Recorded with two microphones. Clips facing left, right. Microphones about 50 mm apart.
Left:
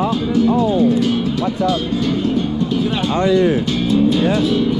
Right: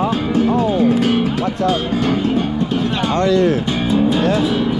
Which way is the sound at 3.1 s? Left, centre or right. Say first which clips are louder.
Even; centre.